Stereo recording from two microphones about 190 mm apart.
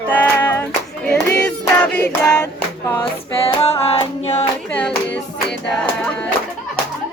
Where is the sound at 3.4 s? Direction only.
30° left (ahead or behind).